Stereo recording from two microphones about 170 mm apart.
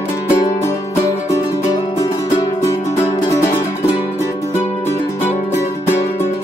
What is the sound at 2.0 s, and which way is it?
Music, 20° left (ahead or behind).